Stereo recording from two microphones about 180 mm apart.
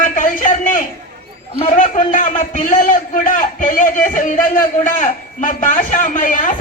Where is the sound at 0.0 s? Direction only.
45° left (ahead or behind).